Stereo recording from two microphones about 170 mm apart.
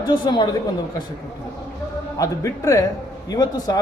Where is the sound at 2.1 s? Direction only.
20° left (ahead or behind).